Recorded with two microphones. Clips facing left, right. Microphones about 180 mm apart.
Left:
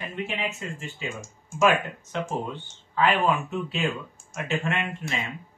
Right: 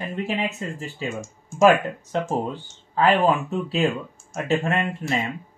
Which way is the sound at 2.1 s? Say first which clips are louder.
Right 5 dB; 35° right (ahead or behind).